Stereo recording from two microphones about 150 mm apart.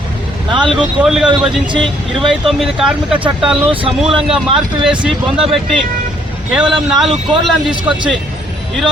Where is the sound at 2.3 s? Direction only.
Centre (ahead or behind).